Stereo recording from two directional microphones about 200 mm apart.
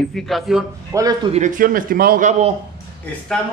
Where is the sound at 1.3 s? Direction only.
40° right (ahead or behind).